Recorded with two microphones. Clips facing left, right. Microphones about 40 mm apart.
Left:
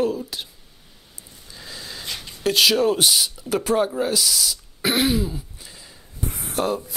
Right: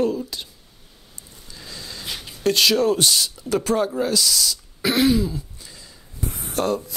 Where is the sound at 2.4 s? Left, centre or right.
Centre.